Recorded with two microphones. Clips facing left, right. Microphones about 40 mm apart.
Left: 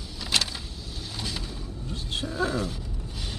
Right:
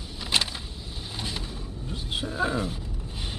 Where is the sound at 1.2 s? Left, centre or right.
Centre.